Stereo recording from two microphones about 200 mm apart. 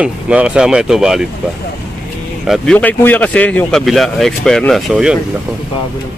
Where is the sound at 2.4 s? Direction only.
Centre (ahead or behind).